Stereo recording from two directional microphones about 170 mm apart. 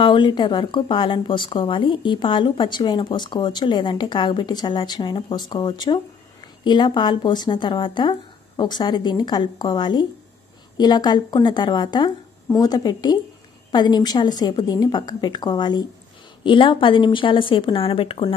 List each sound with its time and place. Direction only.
0.0 s speech: 25° left (ahead or behind)